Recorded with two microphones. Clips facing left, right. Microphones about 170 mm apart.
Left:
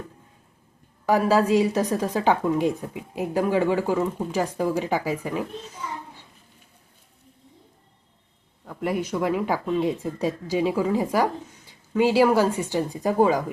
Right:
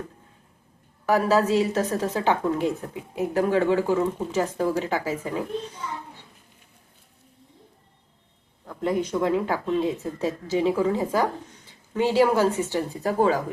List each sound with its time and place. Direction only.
1.0 s a woman's voice: 15° left (ahead or behind)
8.6 s a woman's voice: 10° left (ahead or behind)